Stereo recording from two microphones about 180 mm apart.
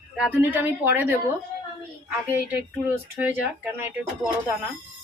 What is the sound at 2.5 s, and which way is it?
Speech, 10° right (ahead or behind).